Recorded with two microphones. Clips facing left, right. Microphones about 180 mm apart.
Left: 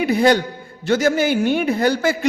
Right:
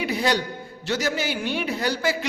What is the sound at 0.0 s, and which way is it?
A man's voice, 50° left (ahead or behind).